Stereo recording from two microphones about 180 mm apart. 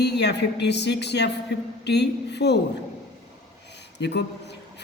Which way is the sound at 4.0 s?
70° left (ahead or behind).